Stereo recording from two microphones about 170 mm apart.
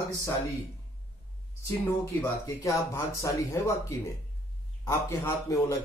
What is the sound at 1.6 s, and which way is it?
A man's voice, 15° left (ahead or behind).